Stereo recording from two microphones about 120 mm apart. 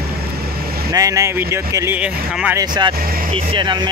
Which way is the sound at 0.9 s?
30° right (ahead or behind).